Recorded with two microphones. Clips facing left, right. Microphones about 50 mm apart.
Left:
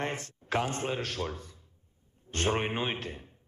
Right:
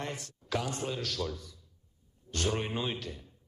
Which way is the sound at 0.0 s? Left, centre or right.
Left.